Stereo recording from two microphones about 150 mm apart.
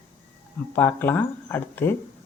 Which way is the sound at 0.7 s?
15° left (ahead or behind).